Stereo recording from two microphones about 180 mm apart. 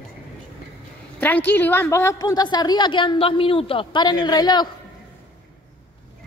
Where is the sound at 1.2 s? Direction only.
10° left (ahead or behind).